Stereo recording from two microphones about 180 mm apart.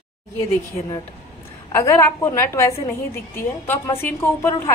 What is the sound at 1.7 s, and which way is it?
A woman's voice, 15° left (ahead or behind).